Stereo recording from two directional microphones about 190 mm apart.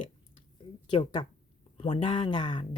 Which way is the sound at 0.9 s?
25° left (ahead or behind).